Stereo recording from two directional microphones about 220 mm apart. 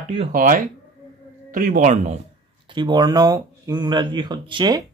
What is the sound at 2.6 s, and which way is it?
Speech, 20° right (ahead or behind).